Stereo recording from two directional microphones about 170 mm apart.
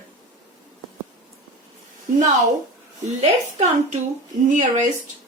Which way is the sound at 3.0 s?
40° right (ahead or behind).